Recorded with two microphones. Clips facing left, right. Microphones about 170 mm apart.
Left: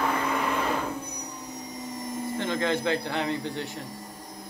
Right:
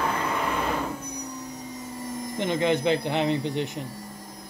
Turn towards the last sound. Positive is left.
turn(degrees=-20)  # may be behind; listen again after turning